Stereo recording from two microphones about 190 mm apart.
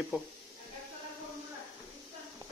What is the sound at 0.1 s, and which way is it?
Speech, 10° right (ahead or behind).